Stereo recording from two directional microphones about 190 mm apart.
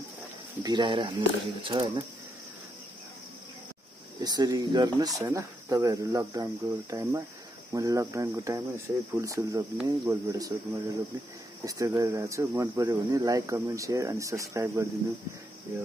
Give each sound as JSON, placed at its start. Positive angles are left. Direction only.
{"t": 0.6, "sound": "speech", "side_deg": -25}
{"t": 4.2, "sound": "speech", "side_deg": -20}